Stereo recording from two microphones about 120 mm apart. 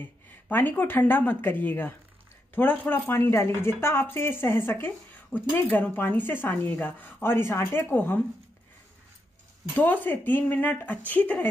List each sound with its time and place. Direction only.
0.0 s speech: 15° left (ahead or behind)
9.8 s speech: 15° left (ahead or behind)